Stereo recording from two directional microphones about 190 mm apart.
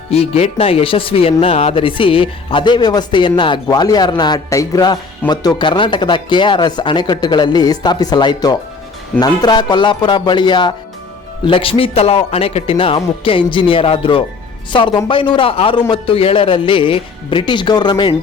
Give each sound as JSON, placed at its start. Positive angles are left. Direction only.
{"t": 0.1, "sound": "speech", "side_deg": 35}